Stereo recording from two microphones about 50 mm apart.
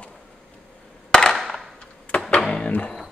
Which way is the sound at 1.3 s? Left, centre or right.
Centre.